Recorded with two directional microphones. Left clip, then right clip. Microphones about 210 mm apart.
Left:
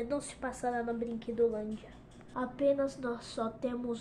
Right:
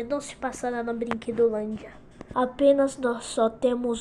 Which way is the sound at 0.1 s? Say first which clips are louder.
Right 7 dB; 10° right (ahead or behind).